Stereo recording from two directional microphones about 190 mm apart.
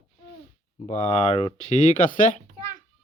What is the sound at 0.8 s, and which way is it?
Speech, 35° left (ahead or behind).